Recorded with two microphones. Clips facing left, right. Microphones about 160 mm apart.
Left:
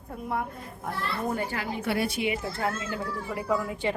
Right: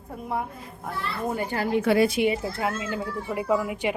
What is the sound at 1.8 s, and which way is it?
Speech, 90° right.